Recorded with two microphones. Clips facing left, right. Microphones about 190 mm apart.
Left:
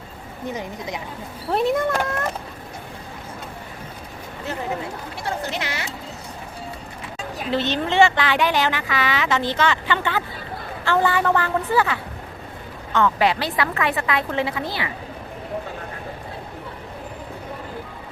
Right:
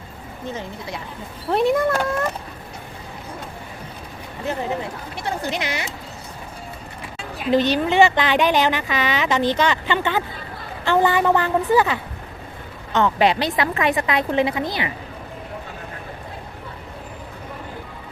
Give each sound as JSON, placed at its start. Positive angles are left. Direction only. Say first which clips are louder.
{"t": 0.4, "sound": "speech", "louder": "left 2 dB", "side_deg": 15}
{"t": 1.5, "sound": "speech", "louder": "right 2 dB", "side_deg": 0}
{"t": 5.2, "sound": "a woman's voice", "louder": "right 2 dB", "side_deg": -15}
{"t": 7.5, "sound": "a woman's voice", "louder": "right 4 dB", "side_deg": -15}